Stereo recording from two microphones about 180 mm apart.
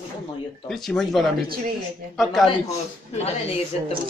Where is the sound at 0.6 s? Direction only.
Centre (ahead or behind).